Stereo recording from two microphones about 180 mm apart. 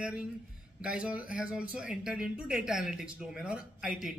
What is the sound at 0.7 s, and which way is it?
Speech, 5° right (ahead or behind).